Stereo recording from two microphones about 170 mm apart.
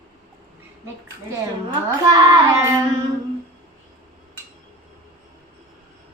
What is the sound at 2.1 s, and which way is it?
Child singing, 20° right (ahead or behind).